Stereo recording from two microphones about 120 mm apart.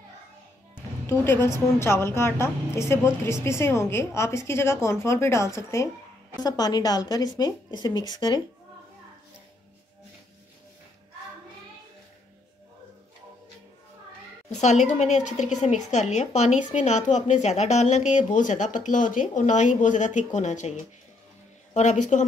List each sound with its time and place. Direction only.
0.7 s a woman's voice: 20° left (ahead or behind); by 8.4 s 35° left (ahead or behind)
14.5 s a woman's voice: 75° left (ahead or behind)